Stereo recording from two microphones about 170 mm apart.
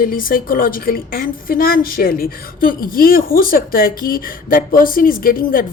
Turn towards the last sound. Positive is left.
turn(degrees=55)  # may be behind; listen again after turning